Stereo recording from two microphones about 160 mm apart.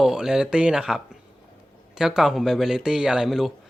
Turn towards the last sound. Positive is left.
turn(degrees=0)  # may be behind; listen again after turning